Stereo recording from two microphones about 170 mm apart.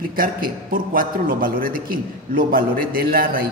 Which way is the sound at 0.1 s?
60° right (ahead or behind).